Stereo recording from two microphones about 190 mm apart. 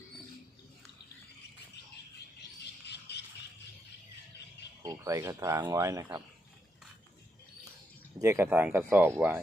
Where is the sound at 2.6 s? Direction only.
60° left (ahead or behind).